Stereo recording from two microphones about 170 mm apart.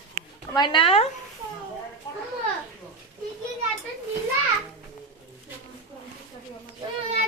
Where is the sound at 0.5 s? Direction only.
25° left (ahead or behind).